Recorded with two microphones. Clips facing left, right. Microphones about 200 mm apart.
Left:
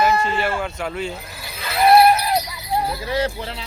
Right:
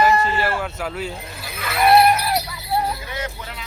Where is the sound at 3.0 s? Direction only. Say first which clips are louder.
Left 8 dB; 35° left (ahead or behind).